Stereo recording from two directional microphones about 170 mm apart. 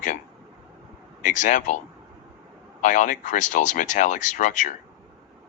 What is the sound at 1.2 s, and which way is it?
Speech, 50° left (ahead or behind).